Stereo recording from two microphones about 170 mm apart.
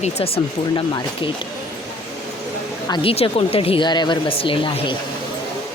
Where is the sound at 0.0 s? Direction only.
35° left (ahead or behind).